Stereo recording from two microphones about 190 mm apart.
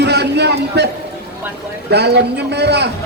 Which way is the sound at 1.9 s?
60° right (ahead or behind).